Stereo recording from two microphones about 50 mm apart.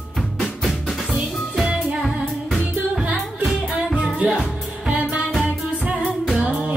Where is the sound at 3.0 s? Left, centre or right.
Right.